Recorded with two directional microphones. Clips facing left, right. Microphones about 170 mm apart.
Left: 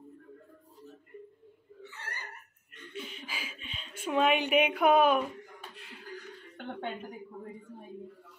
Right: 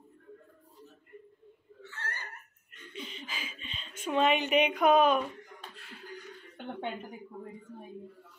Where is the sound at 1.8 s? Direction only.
15° left (ahead or behind).